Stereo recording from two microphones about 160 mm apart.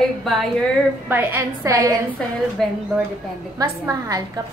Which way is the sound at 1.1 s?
10° right (ahead or behind).